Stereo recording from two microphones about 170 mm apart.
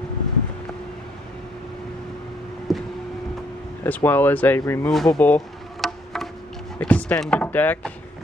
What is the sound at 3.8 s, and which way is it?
Speech, 10° left (ahead or behind).